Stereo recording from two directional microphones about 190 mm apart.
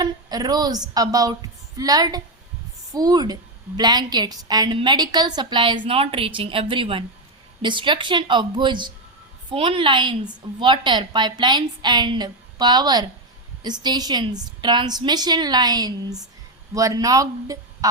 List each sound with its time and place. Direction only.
0.0 s a woman's voice: 20° right (ahead or behind)